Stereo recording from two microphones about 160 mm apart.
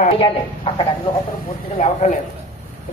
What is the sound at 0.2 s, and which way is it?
Speech, 35° left (ahead or behind).